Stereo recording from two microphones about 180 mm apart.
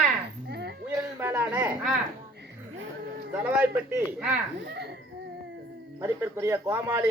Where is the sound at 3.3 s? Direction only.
10° right (ahead or behind).